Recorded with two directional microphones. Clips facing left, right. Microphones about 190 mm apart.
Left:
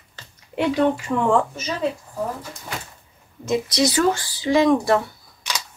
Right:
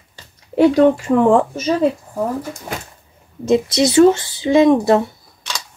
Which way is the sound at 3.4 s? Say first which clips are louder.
Right 6 dB; 25° right (ahead or behind).